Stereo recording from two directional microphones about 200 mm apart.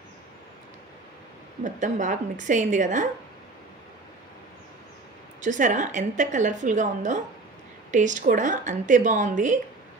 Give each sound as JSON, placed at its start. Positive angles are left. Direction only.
{"t": 1.6, "sound": "a woman's voice", "side_deg": -40}
{"t": 5.4, "sound": "a woman's voice", "side_deg": -40}